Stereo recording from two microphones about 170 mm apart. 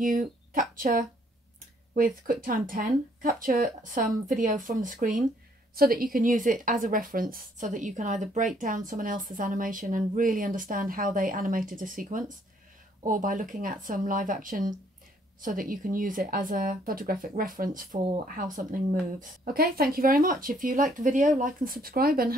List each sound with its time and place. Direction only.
0.0 s a woman's voice: 50° right (ahead or behind)